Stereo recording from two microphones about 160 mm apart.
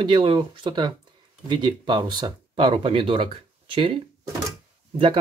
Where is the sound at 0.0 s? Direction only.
30° right (ahead or behind).